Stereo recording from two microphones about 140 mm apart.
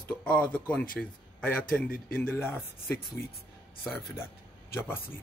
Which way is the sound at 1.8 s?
90° left.